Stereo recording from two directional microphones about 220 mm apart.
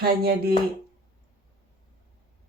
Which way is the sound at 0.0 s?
45° right (ahead or behind).